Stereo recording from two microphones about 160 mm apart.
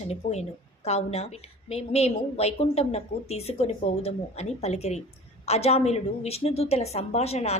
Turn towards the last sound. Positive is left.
turn(degrees=40)  # may be behind; listen again after turning